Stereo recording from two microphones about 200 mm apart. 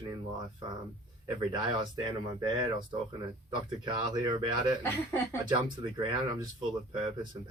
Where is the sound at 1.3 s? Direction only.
20° right (ahead or behind).